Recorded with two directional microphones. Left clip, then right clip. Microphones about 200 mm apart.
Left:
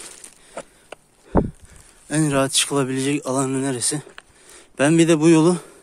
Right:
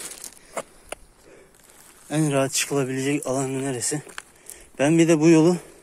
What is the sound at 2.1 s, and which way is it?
Speech, 30° left (ahead or behind).